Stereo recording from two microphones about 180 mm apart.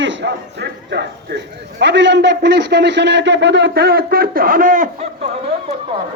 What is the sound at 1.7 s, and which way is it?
A man's voice, 75° right (ahead or behind).